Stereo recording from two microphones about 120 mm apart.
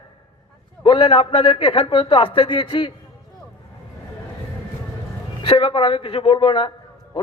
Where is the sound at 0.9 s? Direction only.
40° left (ahead or behind).